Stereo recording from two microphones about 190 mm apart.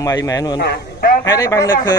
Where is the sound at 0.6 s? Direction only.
60° left (ahead or behind).